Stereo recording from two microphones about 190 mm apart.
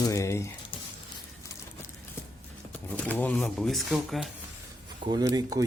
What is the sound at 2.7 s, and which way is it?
Speech, 5° left (ahead or behind).